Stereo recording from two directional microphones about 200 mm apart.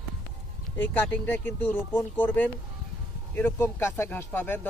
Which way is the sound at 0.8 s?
10° left (ahead or behind).